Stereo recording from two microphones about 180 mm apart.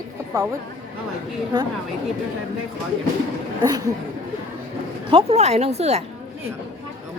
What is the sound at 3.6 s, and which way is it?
Speech, 20° right (ahead or behind).